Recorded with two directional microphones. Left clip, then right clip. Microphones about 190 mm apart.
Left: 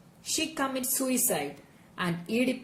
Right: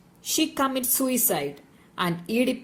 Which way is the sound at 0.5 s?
45° right (ahead or behind).